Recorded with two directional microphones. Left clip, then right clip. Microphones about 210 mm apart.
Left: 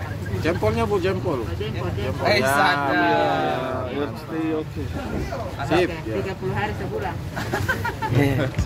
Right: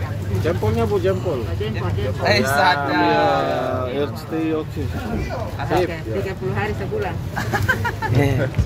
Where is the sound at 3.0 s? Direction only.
5° right (ahead or behind).